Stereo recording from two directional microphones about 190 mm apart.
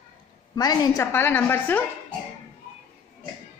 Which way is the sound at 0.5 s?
20° left (ahead or behind).